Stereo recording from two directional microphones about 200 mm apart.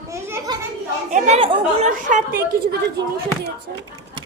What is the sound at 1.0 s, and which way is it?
A woman's voice, 35° right (ahead or behind).